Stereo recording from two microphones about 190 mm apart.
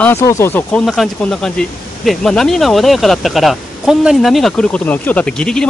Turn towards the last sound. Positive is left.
turn(degrees=5)  # may be behind; listen again after turning